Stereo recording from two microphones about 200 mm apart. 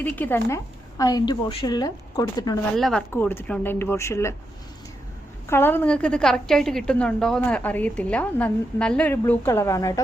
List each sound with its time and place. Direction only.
0.0 s a woman's voice: 10° left (ahead or behind)
2.7 s a woman's voice: 5° left (ahead or behind)
5.5 s a woman's voice: 10° left (ahead or behind)